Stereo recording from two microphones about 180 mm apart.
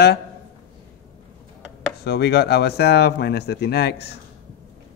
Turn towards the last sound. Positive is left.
turn(degrees=65)  # may be behind; listen again after turning